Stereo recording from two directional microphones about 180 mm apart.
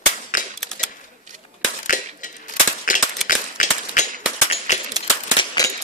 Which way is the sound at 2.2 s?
45° left (ahead or behind).